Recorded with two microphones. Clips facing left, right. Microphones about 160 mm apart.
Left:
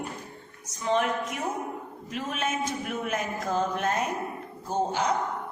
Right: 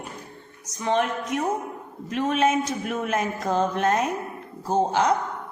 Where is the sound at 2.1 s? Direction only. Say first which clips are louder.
Right 9 dB; 85° right.